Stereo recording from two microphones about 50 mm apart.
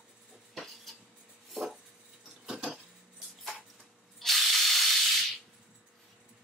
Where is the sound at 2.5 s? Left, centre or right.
Centre.